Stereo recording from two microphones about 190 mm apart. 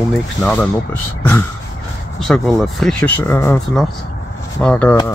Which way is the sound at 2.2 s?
Centre (ahead or behind).